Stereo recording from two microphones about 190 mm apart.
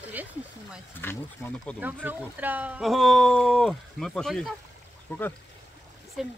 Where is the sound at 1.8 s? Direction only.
10° right (ahead or behind); by 5.2 s 10° left (ahead or behind).